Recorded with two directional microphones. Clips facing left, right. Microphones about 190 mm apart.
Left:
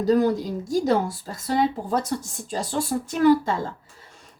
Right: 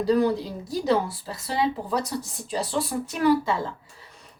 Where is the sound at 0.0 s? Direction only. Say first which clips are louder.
Left 2 dB; 45° left (ahead or behind).